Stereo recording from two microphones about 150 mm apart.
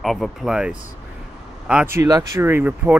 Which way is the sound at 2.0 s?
20° right (ahead or behind).